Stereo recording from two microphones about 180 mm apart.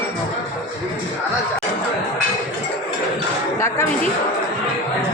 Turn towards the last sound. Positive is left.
turn(degrees=15)  # may be behind; listen again after turning